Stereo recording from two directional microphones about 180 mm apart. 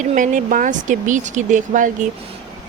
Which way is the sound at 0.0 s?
45° right (ahead or behind).